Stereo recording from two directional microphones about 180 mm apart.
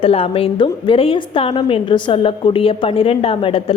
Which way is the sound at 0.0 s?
30° left (ahead or behind).